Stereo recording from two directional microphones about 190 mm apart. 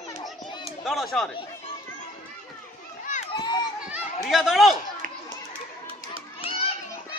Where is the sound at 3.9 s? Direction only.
Centre (ahead or behind).